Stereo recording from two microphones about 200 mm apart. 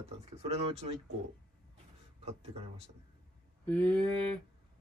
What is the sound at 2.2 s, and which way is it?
Speech, 30° right (ahead or behind).